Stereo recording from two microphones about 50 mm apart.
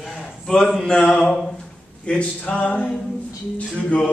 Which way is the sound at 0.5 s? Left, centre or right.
Centre.